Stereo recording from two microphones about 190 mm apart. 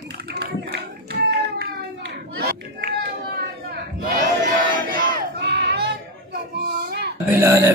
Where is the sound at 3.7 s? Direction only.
50° right (ahead or behind).